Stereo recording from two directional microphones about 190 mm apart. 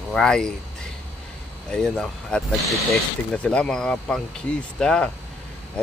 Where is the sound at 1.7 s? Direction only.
5° left (ahead or behind).